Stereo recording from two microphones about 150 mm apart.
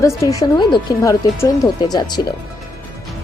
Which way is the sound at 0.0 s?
20° left (ahead or behind).